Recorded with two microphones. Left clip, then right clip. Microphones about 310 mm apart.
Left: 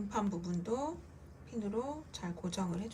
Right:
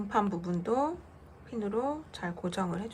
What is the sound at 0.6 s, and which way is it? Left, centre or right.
Speech, centre.